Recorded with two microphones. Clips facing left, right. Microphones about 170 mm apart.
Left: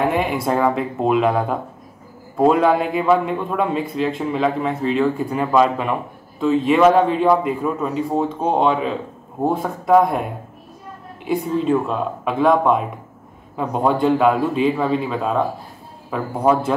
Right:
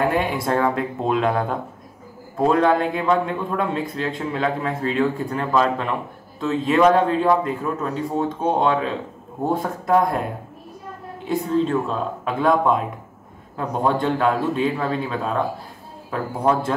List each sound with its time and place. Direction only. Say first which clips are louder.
0.0 s a man's voice: left 2 dB; centre (ahead or behind)
11.2 s a man's voice: left 2 dB; 10° left (ahead or behind)